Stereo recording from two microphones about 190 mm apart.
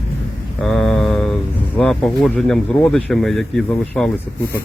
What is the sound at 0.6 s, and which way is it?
Mantra, 5° left (ahead or behind).